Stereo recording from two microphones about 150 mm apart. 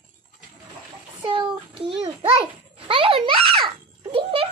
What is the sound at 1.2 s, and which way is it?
A child's voice, 35° right (ahead or behind).